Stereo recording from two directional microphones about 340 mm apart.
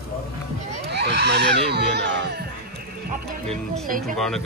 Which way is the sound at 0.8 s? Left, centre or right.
Right.